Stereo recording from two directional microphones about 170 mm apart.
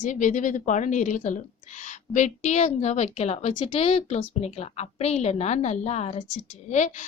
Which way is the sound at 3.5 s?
30° left (ahead or behind).